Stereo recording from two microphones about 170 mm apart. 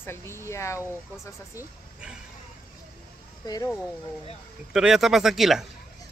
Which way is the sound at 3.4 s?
25° left (ahead or behind).